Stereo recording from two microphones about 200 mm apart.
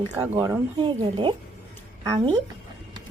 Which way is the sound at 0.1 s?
20° right (ahead or behind).